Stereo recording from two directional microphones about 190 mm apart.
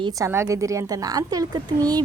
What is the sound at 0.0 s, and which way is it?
A woman's voice, 15° right (ahead or behind).